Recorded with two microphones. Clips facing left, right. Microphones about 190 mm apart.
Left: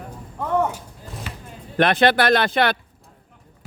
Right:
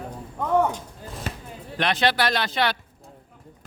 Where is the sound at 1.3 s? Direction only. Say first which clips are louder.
Right 7 dB; 40° right (ahead or behind).